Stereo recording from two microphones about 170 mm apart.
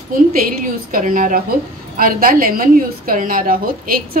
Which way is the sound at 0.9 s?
55° right (ahead or behind).